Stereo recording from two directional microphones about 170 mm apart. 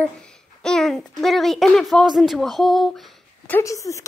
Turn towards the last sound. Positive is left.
turn(degrees=20)  # may be behind; listen again after turning